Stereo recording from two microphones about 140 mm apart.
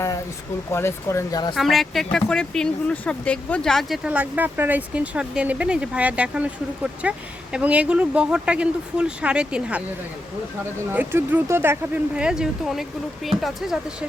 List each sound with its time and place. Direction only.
0.7 s speech: 20° left (ahead or behind)
1.5 s speech: centre (ahead or behind)
10.9 s speech: 10° right (ahead or behind)
12.1 s speech: 5° right (ahead or behind)